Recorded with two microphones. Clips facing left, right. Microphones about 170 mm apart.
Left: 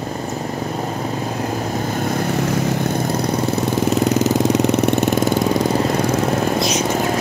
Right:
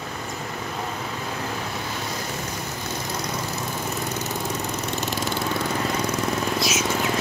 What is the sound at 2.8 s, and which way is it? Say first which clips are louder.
Vehicle: left 11 dB; 55° left (ahead or behind).